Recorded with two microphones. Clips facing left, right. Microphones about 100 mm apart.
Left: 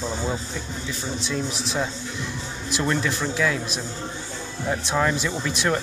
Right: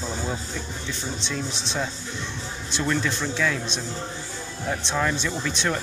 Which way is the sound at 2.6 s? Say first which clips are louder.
Left 1 dB; 10° left (ahead or behind).